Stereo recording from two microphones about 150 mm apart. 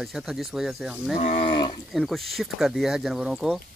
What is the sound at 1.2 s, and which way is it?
Speech, 40° left (ahead or behind).